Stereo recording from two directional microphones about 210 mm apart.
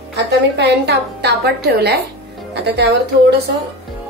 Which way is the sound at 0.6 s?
50° right (ahead or behind).